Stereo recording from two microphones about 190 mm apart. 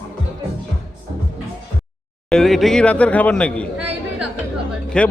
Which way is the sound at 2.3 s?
Centre (ahead or behind).